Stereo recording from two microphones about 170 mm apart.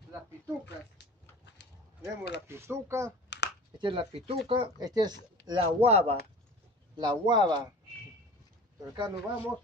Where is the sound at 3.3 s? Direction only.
90° left.